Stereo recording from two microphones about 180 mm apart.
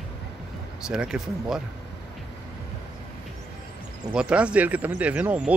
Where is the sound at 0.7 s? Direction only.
5° right (ahead or behind).